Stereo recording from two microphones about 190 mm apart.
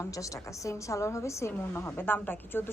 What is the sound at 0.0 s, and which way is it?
A woman's voice, 15° left (ahead or behind).